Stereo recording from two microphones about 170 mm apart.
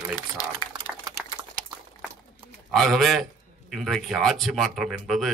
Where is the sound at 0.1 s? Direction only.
25° left (ahead or behind).